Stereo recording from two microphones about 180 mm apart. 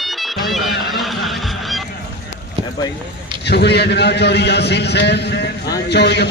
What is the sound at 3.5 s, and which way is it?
A man's voice, 65° left (ahead or behind).